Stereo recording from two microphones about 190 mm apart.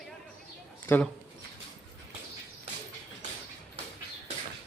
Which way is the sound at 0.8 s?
10° left (ahead or behind).